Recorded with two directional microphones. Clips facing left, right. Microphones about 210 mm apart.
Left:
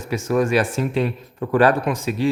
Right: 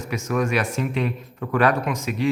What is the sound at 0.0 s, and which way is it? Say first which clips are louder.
A man's voice: left 4 dB; 30° left (ahead or behind).